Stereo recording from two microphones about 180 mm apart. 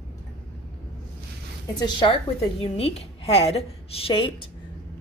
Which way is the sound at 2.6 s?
30° left (ahead or behind).